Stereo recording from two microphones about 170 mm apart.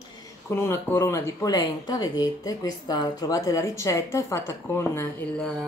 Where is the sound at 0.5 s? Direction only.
15° left (ahead or behind).